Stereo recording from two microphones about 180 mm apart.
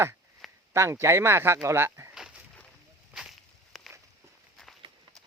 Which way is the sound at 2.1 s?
5° right (ahead or behind).